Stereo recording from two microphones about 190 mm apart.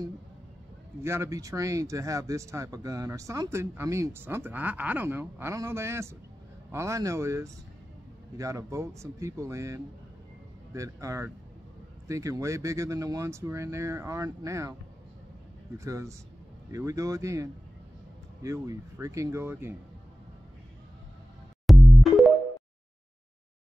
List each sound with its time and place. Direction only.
1.0 s speech: 15° right (ahead or behind)
15.8 s speech: 15° right (ahead or behind)
21.6 s music: centre (ahead or behind)